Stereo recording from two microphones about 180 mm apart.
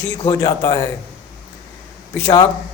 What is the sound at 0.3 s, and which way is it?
Speech, 20° left (ahead or behind).